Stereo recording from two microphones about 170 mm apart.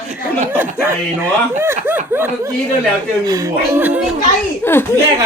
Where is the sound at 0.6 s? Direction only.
15° right (ahead or behind).